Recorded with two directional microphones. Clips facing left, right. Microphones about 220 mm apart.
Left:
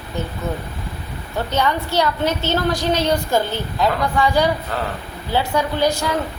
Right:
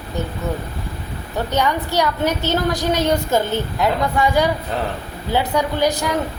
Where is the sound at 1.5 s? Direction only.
15° right (ahead or behind).